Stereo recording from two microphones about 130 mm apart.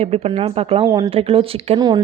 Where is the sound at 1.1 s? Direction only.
45° right (ahead or behind).